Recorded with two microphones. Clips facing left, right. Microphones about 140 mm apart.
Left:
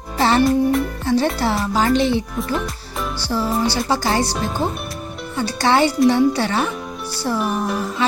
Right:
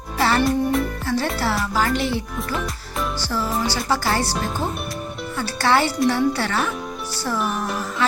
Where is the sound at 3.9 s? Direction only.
15° left (ahead or behind).